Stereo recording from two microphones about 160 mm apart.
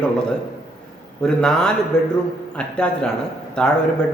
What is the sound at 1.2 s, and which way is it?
A man's voice, 5° left (ahead or behind).